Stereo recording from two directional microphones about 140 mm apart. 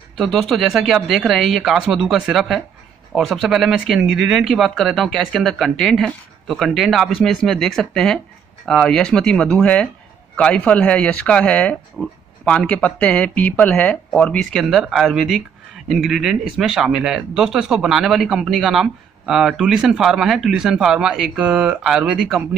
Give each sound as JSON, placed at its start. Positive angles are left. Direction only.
{"t": 0.2, "sound": "speech", "side_deg": 0}